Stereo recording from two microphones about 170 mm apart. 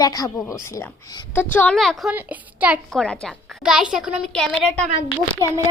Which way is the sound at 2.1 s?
10° right (ahead or behind).